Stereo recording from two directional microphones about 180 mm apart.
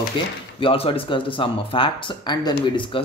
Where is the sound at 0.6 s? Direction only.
30° left (ahead or behind).